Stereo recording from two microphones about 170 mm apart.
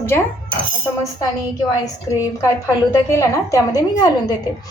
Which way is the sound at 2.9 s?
20° left (ahead or behind).